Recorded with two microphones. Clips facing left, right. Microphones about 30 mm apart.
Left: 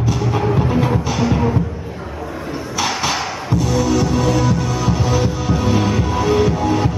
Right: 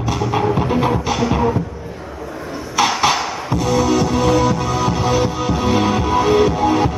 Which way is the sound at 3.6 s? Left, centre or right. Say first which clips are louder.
Right 2 dB; right.